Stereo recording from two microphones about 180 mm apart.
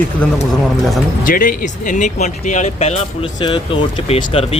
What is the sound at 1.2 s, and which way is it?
Speech, 50° left (ahead or behind).